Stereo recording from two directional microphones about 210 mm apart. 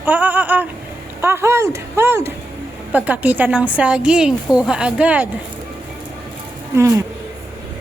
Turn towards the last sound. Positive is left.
turn(degrees=-15)  # may be behind; listen again after turning